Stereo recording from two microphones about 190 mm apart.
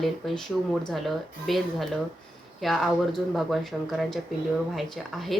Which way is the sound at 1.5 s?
Centre (ahead or behind).